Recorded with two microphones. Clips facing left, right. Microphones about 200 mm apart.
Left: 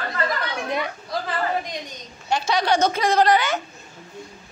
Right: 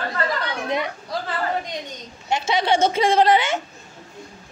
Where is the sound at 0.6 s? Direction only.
20° right (ahead or behind).